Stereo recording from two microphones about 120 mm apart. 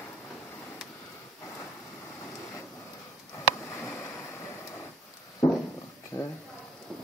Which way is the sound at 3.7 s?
20° left (ahead or behind).